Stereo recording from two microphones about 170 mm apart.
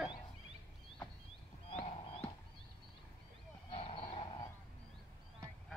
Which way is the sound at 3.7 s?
35° left (ahead or behind).